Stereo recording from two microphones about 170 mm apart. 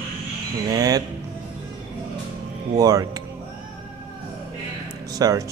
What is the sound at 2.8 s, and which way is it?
Speech, 20° right (ahead or behind).